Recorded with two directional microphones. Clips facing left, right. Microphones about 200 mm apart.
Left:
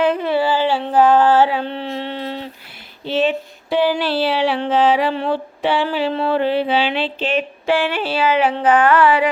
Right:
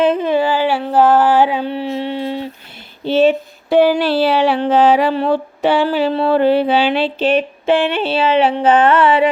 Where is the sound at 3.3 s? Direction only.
45° right (ahead or behind).